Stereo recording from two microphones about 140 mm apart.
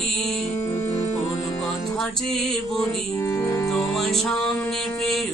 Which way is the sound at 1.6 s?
Centre (ahead or behind).